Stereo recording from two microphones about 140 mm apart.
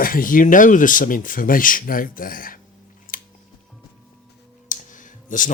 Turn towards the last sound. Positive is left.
turn(degrees=65)  # may be behind; listen again after turning